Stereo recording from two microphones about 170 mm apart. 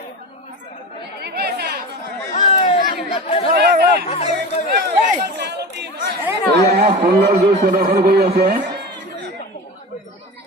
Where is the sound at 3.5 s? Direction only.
70° right (ahead or behind).